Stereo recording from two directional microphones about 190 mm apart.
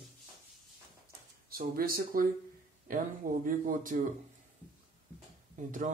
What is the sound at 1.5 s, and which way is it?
Speech, 50° right (ahead or behind).